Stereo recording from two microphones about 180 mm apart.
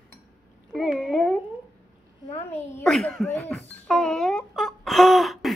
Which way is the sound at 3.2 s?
10° left (ahead or behind).